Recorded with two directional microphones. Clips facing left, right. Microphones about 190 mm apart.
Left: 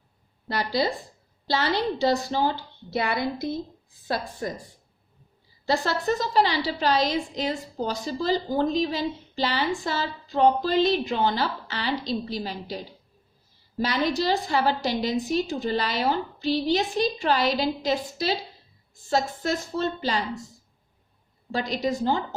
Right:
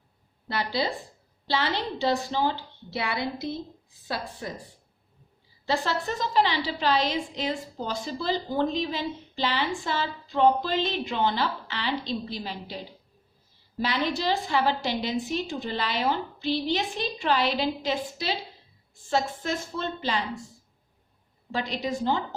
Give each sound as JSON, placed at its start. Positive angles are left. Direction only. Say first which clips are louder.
{"t": 0.4, "sound": "a woman's voice", "louder": "left 3 dB", "side_deg": 40}
{"t": 5.6, "sound": "a woman's voice", "louder": "left 3 dB", "side_deg": 40}
{"t": 21.5, "sound": "a woman's voice", "louder": "left 3 dB", "side_deg": 40}